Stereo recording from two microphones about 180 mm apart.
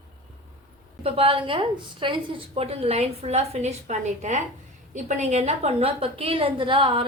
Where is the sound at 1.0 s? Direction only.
30° right (ahead or behind).